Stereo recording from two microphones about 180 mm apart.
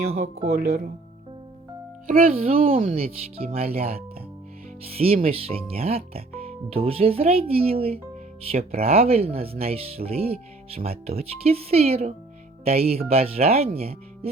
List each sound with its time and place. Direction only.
0.1 s speech: 35° right (ahead or behind)
2.0 s speech: 50° right (ahead or behind)
2.3 s speech: 30° right (ahead or behind)